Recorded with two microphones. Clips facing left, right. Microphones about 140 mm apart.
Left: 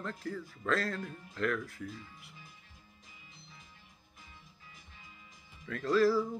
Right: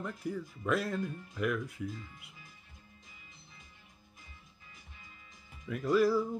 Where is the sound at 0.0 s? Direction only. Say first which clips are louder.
Right 2 dB; 15° right (ahead or behind).